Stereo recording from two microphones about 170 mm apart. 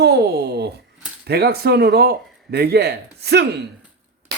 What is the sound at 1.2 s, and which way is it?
A man's voice, 70° right (ahead or behind).